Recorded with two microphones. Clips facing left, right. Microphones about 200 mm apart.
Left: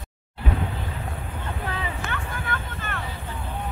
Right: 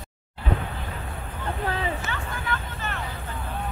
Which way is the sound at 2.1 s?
55° left (ahead or behind).